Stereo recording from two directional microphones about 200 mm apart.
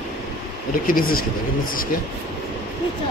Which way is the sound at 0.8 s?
45° left (ahead or behind).